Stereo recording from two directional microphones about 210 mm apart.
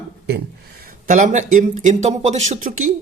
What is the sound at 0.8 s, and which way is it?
Speech, 40° right (ahead or behind).